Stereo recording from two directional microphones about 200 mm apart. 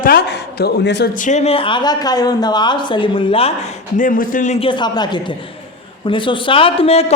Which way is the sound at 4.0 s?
40° left (ahead or behind).